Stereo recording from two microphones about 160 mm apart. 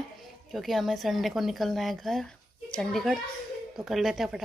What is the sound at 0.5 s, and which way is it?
Speech, centre (ahead or behind).